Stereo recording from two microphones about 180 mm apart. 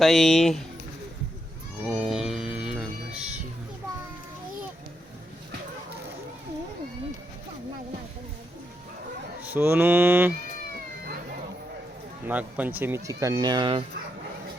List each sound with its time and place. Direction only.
0.0 s speech: centre (ahead or behind)
1.8 s a sound: 5° right (ahead or behind)
9.4 s speech: 10° right (ahead or behind)
12.3 s speech: 10° right (ahead or behind); by 13.8 s 25° right (ahead or behind)